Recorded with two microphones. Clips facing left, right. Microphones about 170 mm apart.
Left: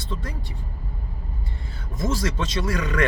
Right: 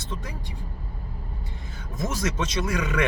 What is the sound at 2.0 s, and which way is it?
Speech, 15° right (ahead or behind).